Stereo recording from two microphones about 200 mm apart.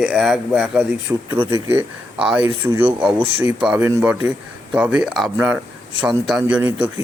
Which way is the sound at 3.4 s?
5° right (ahead or behind).